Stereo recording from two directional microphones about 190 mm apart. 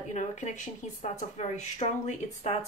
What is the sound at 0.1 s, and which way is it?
Speech, 40° left (ahead or behind).